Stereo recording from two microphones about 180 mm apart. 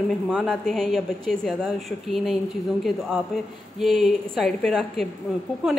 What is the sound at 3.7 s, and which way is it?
A woman's voice, centre (ahead or behind).